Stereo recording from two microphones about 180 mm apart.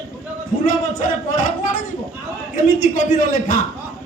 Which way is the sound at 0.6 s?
50° left (ahead or behind).